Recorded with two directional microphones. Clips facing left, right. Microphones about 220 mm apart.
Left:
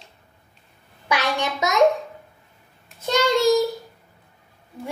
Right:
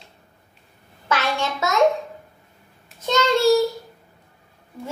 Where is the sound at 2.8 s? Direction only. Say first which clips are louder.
Even; 10° left (ahead or behind).